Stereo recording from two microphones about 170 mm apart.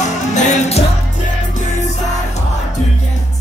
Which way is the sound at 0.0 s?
40° left (ahead or behind).